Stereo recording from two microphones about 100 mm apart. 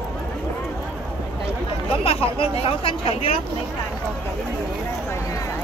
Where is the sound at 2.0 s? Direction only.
70° left (ahead or behind).